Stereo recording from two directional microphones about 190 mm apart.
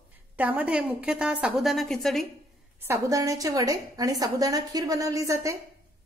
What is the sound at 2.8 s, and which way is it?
A woman's voice, 15° right (ahead or behind).